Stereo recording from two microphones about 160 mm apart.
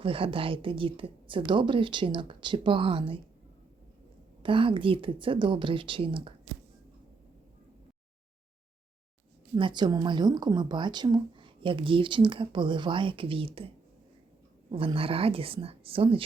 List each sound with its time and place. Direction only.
0.0 s speech: 35° right (ahead or behind)
4.4 s speech: 30° right (ahead or behind)
9.6 s speech: 30° right (ahead or behind)
14.7 s speech: 35° right (ahead or behind)